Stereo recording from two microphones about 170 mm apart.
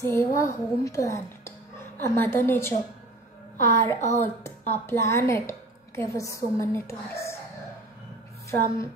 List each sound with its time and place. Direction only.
0.0 s a woman's voice: 15° left (ahead or behind)
8.5 s a woman's voice: 15° left (ahead or behind)